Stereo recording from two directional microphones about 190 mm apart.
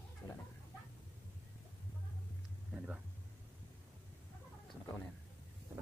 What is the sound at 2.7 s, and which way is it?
Speech, 5° right (ahead or behind).